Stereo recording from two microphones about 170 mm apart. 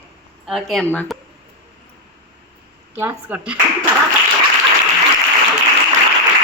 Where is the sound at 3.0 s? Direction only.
10° right (ahead or behind).